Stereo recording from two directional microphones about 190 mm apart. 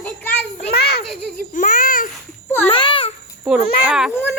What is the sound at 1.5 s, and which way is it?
Speech, 45° left (ahead or behind).